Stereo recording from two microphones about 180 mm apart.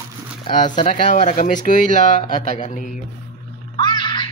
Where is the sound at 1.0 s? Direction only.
45° left (ahead or behind).